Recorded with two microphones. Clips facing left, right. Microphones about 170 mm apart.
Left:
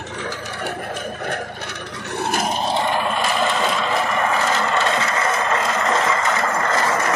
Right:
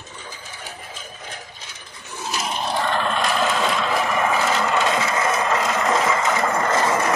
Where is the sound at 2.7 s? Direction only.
15° left (ahead or behind).